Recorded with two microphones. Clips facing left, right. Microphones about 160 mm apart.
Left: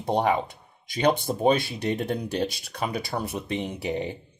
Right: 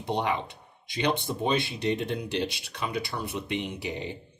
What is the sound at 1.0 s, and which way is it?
Speech, 45° left (ahead or behind).